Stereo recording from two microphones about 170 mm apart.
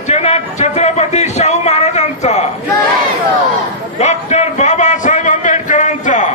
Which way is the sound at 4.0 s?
40° left (ahead or behind).